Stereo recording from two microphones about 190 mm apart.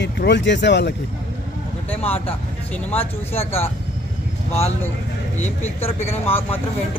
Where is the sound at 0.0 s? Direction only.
65° left (ahead or behind).